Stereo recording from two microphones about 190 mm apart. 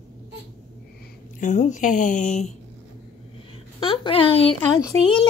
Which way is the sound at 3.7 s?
25° left (ahead or behind).